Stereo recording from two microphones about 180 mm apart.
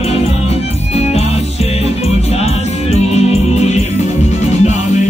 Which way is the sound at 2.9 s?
35° left (ahead or behind).